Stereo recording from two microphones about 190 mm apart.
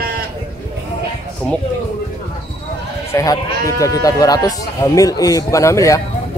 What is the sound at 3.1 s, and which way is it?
Speech, 15° left (ahead or behind).